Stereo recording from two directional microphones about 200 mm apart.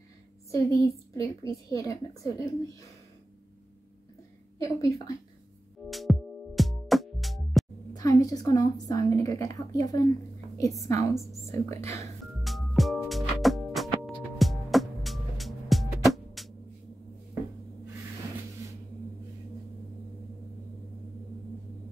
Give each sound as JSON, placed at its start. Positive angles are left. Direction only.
{"t": 0.5, "sound": "a woman's voice", "side_deg": 15}
{"t": 4.6, "sound": "a woman's voice", "side_deg": 15}
{"t": 5.9, "sound": "music", "side_deg": 0}
{"t": 7.9, "sound": "a woman's voice", "side_deg": 15}
{"t": 12.4, "sound": "music", "side_deg": 0}